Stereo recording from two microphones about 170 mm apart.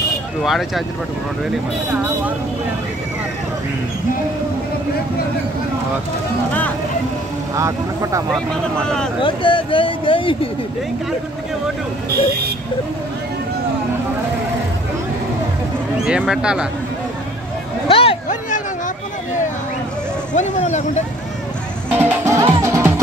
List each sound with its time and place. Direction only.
0.4 s speech: centre (ahead or behind)
7.5 s speech: 20° right (ahead or behind)
8.3 s speech: 5° left (ahead or behind)
9.2 s speech: 30° left (ahead or behind)
16.1 s speech: 5° right (ahead or behind)
17.8 s a sound: 35° left (ahead or behind)
20.3 s speech: 45° left (ahead or behind)
21.9 s music: 15° right (ahead or behind)